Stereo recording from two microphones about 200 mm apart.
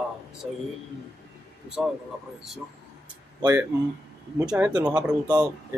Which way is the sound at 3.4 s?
10° right (ahead or behind).